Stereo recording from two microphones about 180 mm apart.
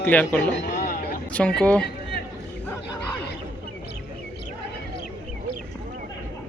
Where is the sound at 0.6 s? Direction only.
50° left (ahead or behind).